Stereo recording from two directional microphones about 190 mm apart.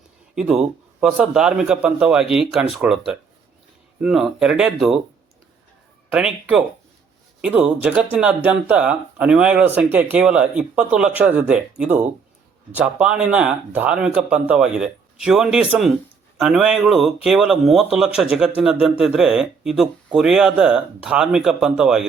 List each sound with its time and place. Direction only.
0.3 s speech: centre (ahead or behind)
4.0 s speech: 5° right (ahead or behind)
6.1 s speech: 5° right (ahead or behind)